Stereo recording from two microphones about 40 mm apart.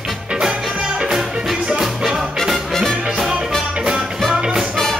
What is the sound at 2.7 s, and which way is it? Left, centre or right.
Music, centre.